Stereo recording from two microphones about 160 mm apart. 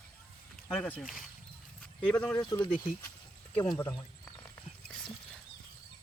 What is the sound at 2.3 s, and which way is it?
Speech, 25° left (ahead or behind).